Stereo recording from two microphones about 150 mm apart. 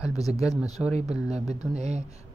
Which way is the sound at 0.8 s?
Centre (ahead or behind).